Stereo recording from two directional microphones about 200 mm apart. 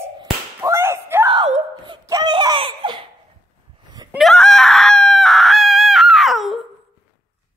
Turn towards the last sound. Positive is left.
turn(degrees=0)  # may be behind; listen again after turning